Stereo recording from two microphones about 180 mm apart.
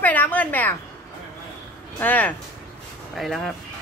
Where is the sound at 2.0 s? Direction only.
10° left (ahead or behind).